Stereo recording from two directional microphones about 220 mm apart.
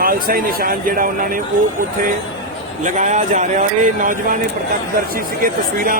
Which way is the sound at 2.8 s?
35° right (ahead or behind).